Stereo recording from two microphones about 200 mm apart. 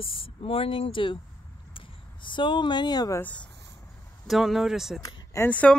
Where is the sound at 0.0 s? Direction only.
25° left (ahead or behind); by 5.0 s centre (ahead or behind).